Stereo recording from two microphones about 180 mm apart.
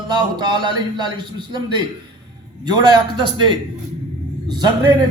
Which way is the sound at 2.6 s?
25° right (ahead or behind).